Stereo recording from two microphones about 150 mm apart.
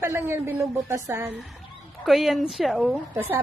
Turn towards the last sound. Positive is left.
turn(degrees=-15)  # may be behind; listen again after turning